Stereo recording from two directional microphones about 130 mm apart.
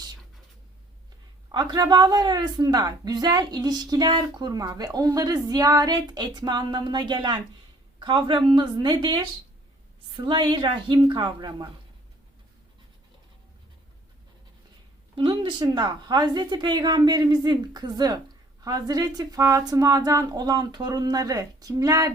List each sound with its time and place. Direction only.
1.5 s a woman's voice: 30° right (ahead or behind)
15.1 s a woman's voice: 40° right (ahead or behind)